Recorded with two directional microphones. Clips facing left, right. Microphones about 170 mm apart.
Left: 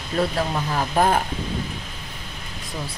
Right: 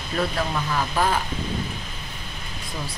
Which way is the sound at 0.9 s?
50° left (ahead or behind).